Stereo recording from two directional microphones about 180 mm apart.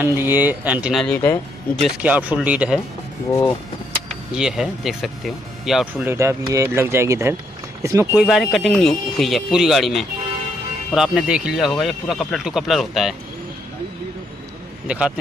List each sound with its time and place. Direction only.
0.0 s speech: 10° right (ahead or behind)
1.0 s speech: 10° left (ahead or behind)
1.8 s speech: 5° right (ahead or behind)
3.3 s speech: 15° left (ahead or behind)
4.3 s speech: 5° right (ahead or behind)
6.0 s speech: 15° right (ahead or behind); by 13.1 s centre (ahead or behind)
14.9 s speech: 5° right (ahead or behind)